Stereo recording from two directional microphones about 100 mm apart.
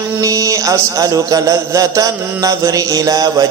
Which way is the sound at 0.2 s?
35° right (ahead or behind).